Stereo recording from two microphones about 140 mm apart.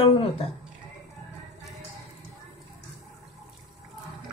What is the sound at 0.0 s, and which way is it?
Speech, 45° left (ahead or behind).